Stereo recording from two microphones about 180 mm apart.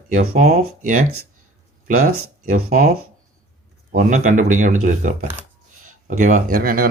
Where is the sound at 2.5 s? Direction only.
45° right (ahead or behind).